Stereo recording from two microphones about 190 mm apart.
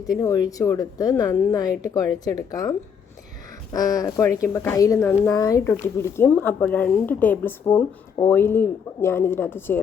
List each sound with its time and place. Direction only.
0.0 s a woman's voice: 20° left (ahead or behind)